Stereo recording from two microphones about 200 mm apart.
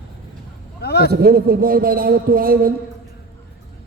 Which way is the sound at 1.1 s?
50° right (ahead or behind).